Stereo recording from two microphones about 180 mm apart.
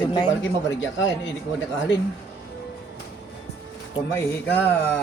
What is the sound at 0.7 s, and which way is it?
Speech, 90° left.